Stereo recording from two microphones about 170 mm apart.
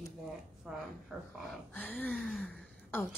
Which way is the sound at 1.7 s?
10° left (ahead or behind).